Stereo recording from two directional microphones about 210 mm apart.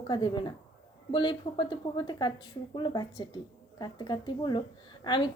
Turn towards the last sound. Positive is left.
turn(degrees=20)  # may be behind; listen again after turning